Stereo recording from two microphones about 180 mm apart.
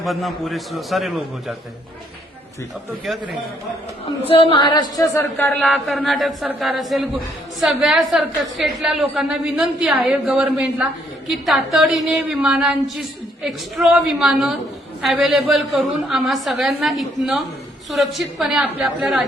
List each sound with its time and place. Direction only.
0.0 s a woman's voice: centre (ahead or behind)
3.1 s a woman's voice: centre (ahead or behind)
4.3 s speech: 30° left (ahead or behind)
5.5 s a woman's voice: centre (ahead or behind)